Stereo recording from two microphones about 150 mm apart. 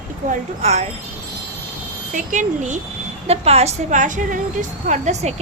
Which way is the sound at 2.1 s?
60° right (ahead or behind).